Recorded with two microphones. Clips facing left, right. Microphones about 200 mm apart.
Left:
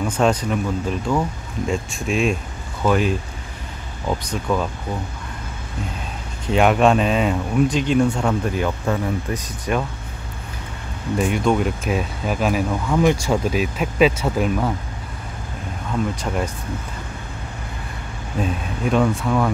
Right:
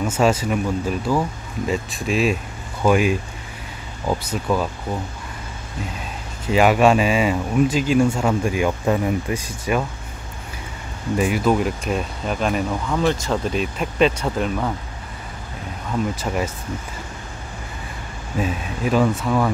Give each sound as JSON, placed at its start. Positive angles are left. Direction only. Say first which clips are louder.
{"t": 0.2, "sound": "speech", "louder": "even", "side_deg": -5}
{"t": 6.4, "sound": "speech", "louder": "right 1 dB", "side_deg": -5}
{"t": 11.1, "sound": "speech", "louder": "even", "side_deg": -5}
{"t": 16.2, "sound": "speech", "louder": "even", "side_deg": -5}
{"t": 18.4, "sound": "speech", "louder": "even", "side_deg": -5}